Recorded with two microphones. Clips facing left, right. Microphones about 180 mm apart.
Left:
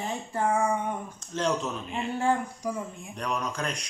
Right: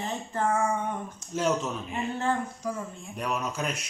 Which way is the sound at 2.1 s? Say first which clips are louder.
Left 4 dB; 10° left (ahead or behind).